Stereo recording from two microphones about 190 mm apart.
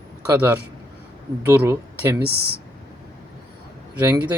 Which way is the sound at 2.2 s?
55° right (ahead or behind).